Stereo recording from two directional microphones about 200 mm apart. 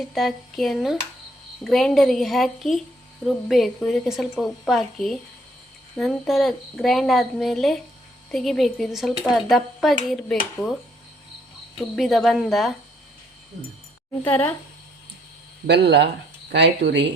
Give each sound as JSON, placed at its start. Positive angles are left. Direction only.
{"t": 0.1, "sound": "a woman's voice", "side_deg": 0}
{"t": 11.8, "sound": "a woman's voice", "side_deg": 0}
{"t": 14.3, "sound": "speech", "side_deg": 10}
{"t": 15.6, "sound": "speech", "side_deg": -60}